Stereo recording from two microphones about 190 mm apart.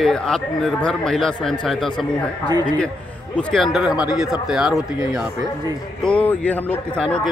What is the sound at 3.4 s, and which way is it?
Speech, 5° left (ahead or behind).